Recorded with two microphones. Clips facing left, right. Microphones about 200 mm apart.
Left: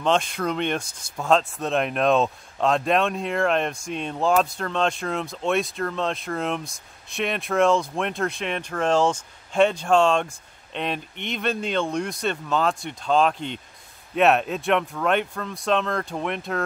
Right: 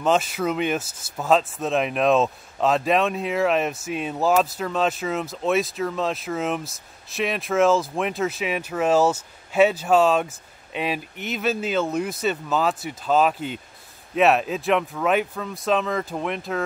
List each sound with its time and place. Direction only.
0.0 s speech: 5° right (ahead or behind)